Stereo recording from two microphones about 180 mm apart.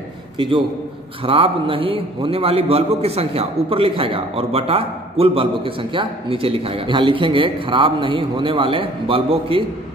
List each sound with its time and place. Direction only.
0.4 s a man's voice: 30° right (ahead or behind)